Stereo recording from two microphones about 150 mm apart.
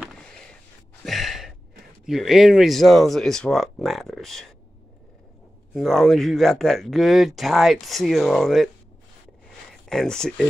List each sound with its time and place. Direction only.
0.0 s a sound: 5° left (ahead or behind)
1.0 s sigh: centre (ahead or behind)
2.0 s speech: centre (ahead or behind)
5.8 s speech: centre (ahead or behind)
9.7 s speech: 5° left (ahead or behind)